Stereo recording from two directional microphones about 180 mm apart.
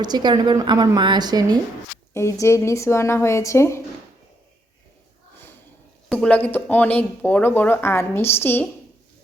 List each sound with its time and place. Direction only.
0.0 s a woman's voice: 25° right (ahead or behind)
2.1 s speech: 15° left (ahead or behind)
6.1 s speech: 5° left (ahead or behind)